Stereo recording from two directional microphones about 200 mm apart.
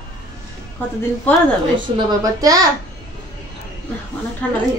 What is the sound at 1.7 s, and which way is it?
Speech, 20° right (ahead or behind).